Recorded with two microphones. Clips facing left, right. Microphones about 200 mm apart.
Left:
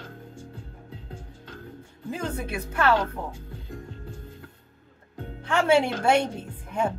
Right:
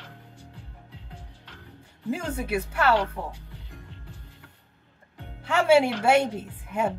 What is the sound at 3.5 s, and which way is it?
Music, 45° left (ahead or behind).